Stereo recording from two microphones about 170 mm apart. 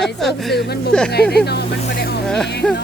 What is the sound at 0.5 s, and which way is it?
Speech, 75° left (ahead or behind).